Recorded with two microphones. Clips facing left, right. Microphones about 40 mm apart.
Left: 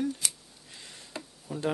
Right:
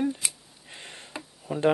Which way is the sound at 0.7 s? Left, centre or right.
Right.